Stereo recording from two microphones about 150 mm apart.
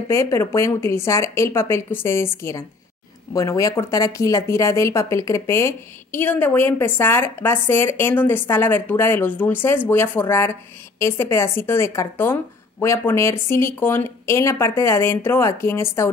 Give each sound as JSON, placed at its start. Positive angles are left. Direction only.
{"t": 0.1, "sound": "speech", "side_deg": 20}
{"t": 3.3, "sound": "speech", "side_deg": 20}